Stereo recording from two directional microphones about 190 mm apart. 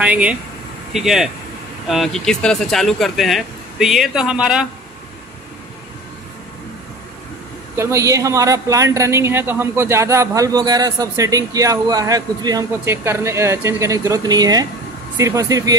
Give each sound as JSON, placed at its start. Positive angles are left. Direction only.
{"t": 0.0, "sound": "a woman's voice", "side_deg": -5}
{"t": 7.7, "sound": "a woman's voice", "side_deg": -15}